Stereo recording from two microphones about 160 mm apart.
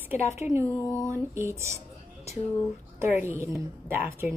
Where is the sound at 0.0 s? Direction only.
15° right (ahead or behind).